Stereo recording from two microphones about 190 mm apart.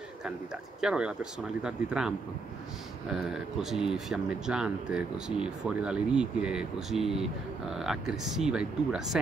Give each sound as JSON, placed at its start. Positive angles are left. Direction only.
{"t": 0.7, "sound": "speech", "side_deg": -5}